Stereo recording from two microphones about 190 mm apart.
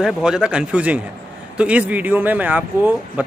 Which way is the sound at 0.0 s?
5° right (ahead or behind).